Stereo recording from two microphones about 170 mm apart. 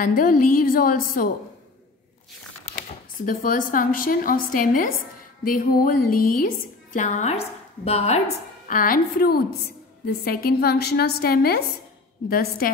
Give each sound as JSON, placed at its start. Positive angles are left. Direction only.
{"t": 0.0, "sound": "a woman's voice", "side_deg": 55}
{"t": 3.3, "sound": "a woman's voice", "side_deg": 55}
{"t": 8.6, "sound": "a woman's voice", "side_deg": 55}